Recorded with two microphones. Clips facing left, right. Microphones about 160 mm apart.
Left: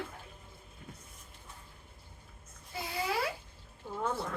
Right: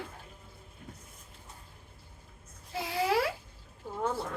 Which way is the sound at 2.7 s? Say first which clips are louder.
Right 6 dB; 90° right.